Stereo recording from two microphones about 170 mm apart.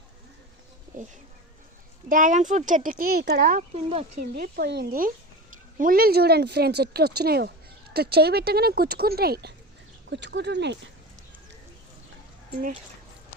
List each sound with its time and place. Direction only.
2.0 s a woman's voice: 50° right (ahead or behind); by 9.6 s 70° right (ahead or behind)
10.1 s speech: 90° right